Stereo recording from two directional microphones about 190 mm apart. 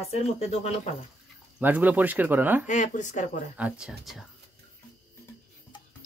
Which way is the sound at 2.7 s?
40° left (ahead or behind).